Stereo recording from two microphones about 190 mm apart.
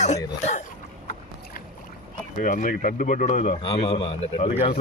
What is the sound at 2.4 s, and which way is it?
A man's voice, 45° left (ahead or behind).